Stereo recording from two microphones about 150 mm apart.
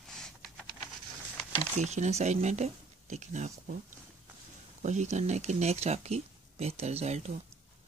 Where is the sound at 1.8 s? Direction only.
50° right (ahead or behind).